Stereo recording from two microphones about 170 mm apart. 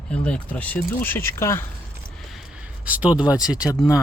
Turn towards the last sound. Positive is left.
turn(degrees=20)  # may be behind; listen again after turning